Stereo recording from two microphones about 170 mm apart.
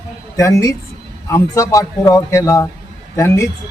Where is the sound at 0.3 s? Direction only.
20° left (ahead or behind).